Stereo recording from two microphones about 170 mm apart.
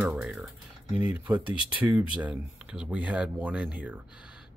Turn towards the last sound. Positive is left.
turn(degrees=-5)  # may be behind; listen again after turning